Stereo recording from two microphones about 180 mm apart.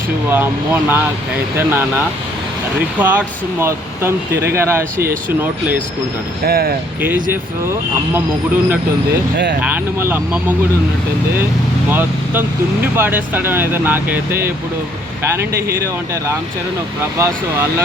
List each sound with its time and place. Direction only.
0.3 s speech: 10° right (ahead or behind)
6.4 s speech: 60° right (ahead or behind)
7.0 s speech: 10° right (ahead or behind)
9.6 s speech: 10° right (ahead or behind)
11.9 s speech: 10° right (ahead or behind)